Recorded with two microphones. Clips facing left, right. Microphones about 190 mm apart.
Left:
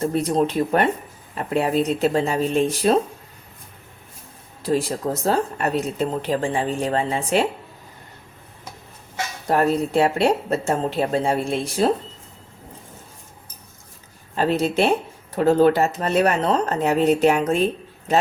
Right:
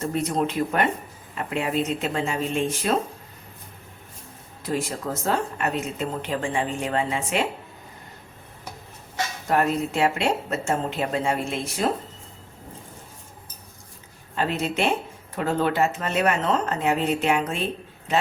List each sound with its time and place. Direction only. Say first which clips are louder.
0.1 s speech: left 4 dB; 35° left (ahead or behind)
4.6 s speech: left 6 dB; 35° left (ahead or behind)
9.5 s speech: left 4 dB; 35° left (ahead or behind)
14.3 s speech: left 5 dB; 35° left (ahead or behind)